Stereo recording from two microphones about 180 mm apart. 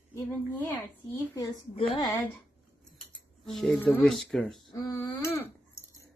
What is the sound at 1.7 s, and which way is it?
Speech, 30° left (ahead or behind).